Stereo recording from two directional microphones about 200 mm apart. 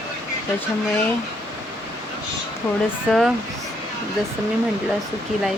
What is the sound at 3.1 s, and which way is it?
Speech, centre (ahead or behind).